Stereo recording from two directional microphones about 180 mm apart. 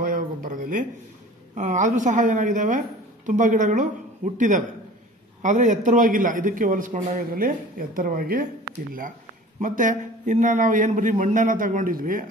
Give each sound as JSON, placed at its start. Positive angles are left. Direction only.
{"t": 0.0, "sound": "a sound", "side_deg": -50}
{"t": 1.5, "sound": "a man's voice", "side_deg": -45}
{"t": 9.6, "sound": "a man's voice", "side_deg": -45}